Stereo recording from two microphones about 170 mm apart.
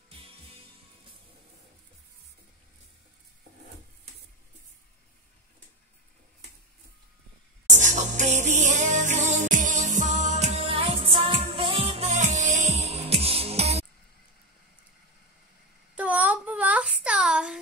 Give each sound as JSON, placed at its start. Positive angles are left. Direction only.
{"t": 0.1, "sound": "music", "side_deg": -35}
{"t": 7.7, "sound": "music", "side_deg": -45}
{"t": 15.9, "sound": "a sound", "side_deg": -10}